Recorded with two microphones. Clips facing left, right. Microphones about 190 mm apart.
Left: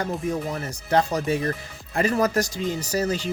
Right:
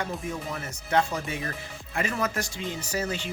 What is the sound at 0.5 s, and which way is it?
Speech, 35° left (ahead or behind).